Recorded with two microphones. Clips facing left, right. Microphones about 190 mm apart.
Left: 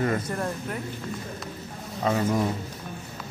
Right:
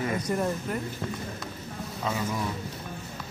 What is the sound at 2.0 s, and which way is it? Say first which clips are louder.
Speech: left 7 dB; 55° left (ahead or behind).